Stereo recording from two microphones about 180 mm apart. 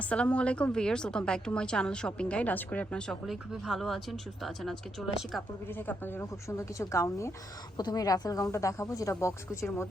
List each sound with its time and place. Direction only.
0.0 s a woman's voice: 5° left (ahead or behind)